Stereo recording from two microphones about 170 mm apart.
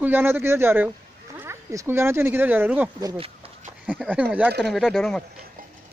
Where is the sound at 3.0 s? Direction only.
30° right (ahead or behind).